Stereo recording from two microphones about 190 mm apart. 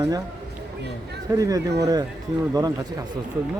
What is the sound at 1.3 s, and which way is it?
Speech, 20° right (ahead or behind).